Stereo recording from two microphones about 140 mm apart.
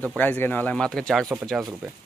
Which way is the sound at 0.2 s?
15° left (ahead or behind).